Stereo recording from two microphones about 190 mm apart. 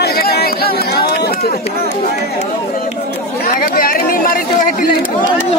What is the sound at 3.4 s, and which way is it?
Speech, 50° left (ahead or behind).